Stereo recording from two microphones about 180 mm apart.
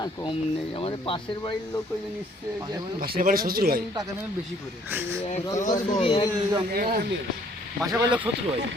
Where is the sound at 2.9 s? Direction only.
55° right (ahead or behind).